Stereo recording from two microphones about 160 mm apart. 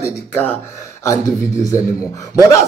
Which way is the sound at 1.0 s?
20° left (ahead or behind).